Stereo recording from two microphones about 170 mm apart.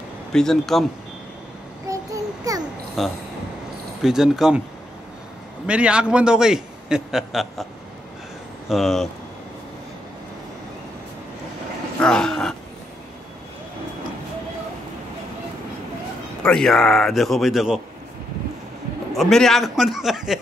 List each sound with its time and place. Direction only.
0.3 s a man's voice: 5° left (ahead or behind)
1.9 s child singing: 20° right (ahead or behind)
2.4 s a sound: 20° right (ahead or behind)
3.0 s a man's voice: centre (ahead or behind)
5.7 s a man's voice: 5° right (ahead or behind)
8.6 s a man's voice: centre (ahead or behind)
12.0 s dog: 5° left (ahead or behind)
16.4 s a man's voice: 5° left (ahead or behind)
19.1 s a man's voice: centre (ahead or behind)